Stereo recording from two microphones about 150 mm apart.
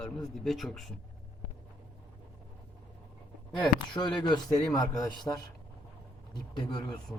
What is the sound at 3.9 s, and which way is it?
A man's voice, 30° left (ahead or behind).